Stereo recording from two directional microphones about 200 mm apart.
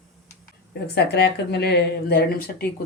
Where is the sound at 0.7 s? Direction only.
55° left (ahead or behind).